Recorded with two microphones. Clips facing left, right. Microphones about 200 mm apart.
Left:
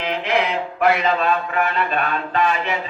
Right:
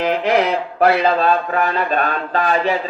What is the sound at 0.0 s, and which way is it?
Speech, 40° right (ahead or behind).